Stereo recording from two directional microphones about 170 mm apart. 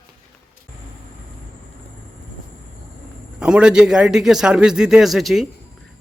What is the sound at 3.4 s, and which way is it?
A man's voice, 5° right (ahead or behind).